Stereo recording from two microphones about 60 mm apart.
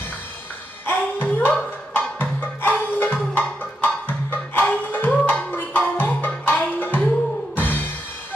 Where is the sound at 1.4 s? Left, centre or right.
Left.